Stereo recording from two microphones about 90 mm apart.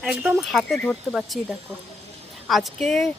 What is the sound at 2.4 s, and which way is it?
Speech, centre (ahead or behind).